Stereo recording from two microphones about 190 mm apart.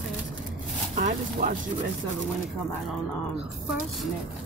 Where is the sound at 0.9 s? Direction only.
45° right (ahead or behind).